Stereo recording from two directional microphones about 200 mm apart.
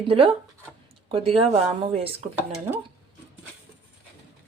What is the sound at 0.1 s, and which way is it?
Speech, 30° right (ahead or behind).